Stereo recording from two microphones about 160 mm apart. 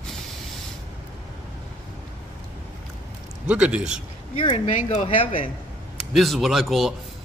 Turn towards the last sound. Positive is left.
turn(degrees=0)  # may be behind; listen again after turning